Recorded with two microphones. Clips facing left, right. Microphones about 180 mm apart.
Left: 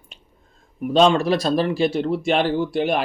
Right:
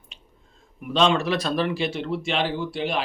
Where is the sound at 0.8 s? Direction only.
45° left (ahead or behind).